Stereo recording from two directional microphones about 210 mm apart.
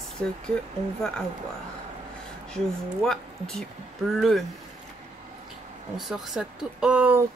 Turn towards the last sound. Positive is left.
turn(degrees=-5)  # may be behind; listen again after turning